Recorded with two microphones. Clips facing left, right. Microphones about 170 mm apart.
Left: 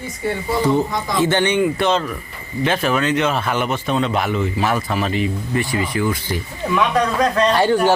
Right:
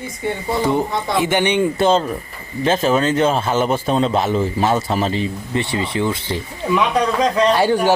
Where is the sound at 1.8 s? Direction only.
30° right (ahead or behind).